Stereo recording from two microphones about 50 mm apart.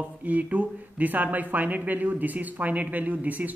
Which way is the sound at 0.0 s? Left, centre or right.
Right.